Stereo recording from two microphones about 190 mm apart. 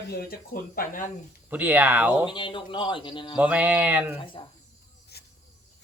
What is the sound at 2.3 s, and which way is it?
Speech, 25° left (ahead or behind).